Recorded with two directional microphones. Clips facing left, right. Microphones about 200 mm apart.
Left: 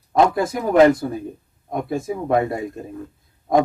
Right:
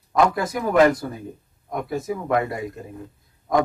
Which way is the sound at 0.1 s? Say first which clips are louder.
Left 3 dB; 25° left (ahead or behind).